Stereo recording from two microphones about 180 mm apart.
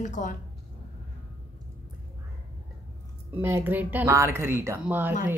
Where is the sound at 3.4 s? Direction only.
10° right (ahead or behind).